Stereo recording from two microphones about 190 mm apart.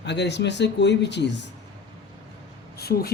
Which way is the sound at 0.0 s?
65° left (ahead or behind).